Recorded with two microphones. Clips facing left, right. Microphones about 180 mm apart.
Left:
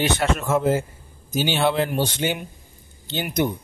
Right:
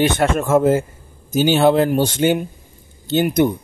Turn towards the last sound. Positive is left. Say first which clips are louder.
# right 8 dB
turn(degrees=-50)  # may be behind; listen again after turning